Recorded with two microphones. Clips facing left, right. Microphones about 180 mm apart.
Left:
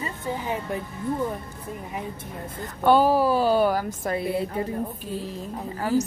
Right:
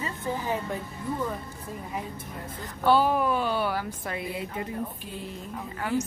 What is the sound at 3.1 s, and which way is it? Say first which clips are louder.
A woman's voice: left 5 dB; 35° left (ahead or behind).